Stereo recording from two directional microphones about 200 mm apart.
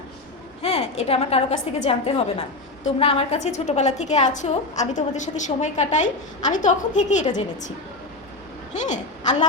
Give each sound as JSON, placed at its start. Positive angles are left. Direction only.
{"t": 0.6, "sound": "a woman's voice", "side_deg": 30}
{"t": 8.9, "sound": "a woman's voice", "side_deg": 35}